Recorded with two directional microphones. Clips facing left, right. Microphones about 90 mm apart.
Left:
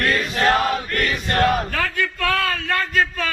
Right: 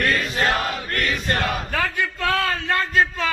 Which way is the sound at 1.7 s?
15° right (ahead or behind).